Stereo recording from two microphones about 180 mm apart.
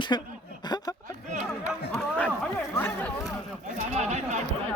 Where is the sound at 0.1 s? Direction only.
20° left (ahead or behind).